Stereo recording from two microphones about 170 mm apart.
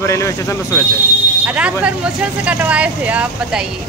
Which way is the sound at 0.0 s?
15° left (ahead or behind).